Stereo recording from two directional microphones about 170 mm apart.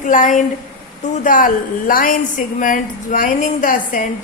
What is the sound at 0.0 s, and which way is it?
A man's voice, 50° left (ahead or behind).